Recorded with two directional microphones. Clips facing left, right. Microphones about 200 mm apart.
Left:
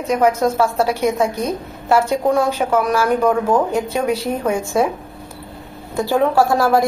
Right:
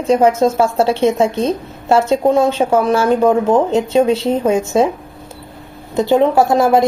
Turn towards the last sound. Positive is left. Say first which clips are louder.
# right 3 dB
turn(degrees=-20)  # may be behind; listen again after turning